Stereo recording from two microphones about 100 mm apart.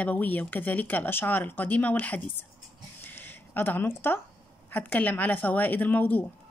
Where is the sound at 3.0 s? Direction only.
20° left (ahead or behind).